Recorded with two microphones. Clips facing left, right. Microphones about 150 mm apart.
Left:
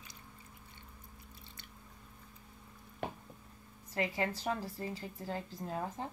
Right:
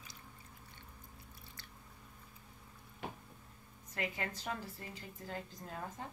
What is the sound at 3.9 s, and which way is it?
A woman's voice, 30° left (ahead or behind).